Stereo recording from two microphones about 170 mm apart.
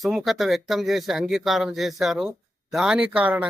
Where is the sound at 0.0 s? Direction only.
Centre (ahead or behind).